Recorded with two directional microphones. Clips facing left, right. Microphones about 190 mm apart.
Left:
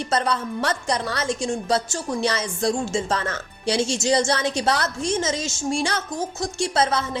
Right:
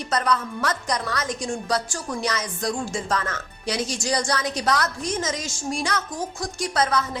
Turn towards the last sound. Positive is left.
turn(degrees=25)  # may be behind; listen again after turning